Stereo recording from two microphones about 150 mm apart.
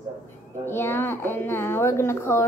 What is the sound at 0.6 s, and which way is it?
A woman's voice, 15° left (ahead or behind).